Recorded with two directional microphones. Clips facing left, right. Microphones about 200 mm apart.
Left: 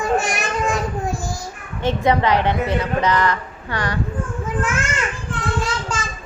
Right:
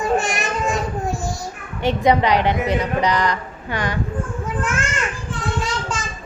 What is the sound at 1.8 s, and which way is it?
A woman's voice, 15° right (ahead or behind).